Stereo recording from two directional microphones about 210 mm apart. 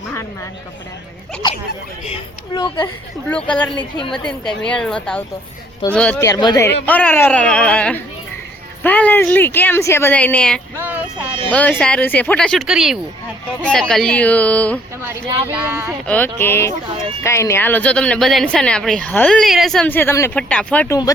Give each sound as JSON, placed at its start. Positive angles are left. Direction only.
{"t": 2.6, "sound": "a woman's voice", "side_deg": 20}
{"t": 3.2, "sound": "speech", "side_deg": 5}
{"t": 10.8, "sound": "child singing", "side_deg": -10}
{"t": 11.7, "sound": "speech", "side_deg": 5}
{"t": 15.0, "sound": "speech", "side_deg": -10}
{"t": 16.0, "sound": "speech", "side_deg": 10}